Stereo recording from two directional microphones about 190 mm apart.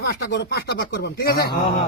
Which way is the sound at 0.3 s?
60° left (ahead or behind).